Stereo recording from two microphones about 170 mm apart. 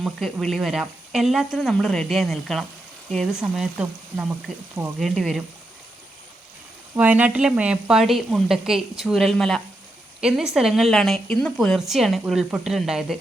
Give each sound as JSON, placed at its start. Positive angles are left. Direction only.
{"t": 0.0, "sound": "speech", "side_deg": 0}
{"t": 6.9, "sound": "speech", "side_deg": -10}